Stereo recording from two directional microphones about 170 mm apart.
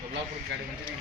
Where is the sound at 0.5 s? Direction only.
90° right.